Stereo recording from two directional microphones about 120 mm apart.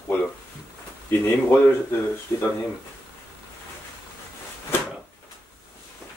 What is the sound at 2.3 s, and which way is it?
Speech, 20° left (ahead or behind).